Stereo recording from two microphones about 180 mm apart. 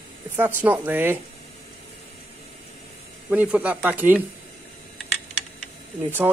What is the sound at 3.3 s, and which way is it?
Speech, 10° right (ahead or behind).